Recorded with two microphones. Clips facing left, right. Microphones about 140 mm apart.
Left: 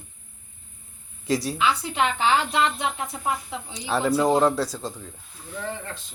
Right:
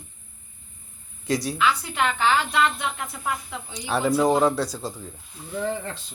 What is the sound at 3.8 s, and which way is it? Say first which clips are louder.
A man's voice: right 1 dB; centre (ahead or behind).